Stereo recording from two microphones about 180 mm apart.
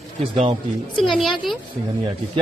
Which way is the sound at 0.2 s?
30° right (ahead or behind).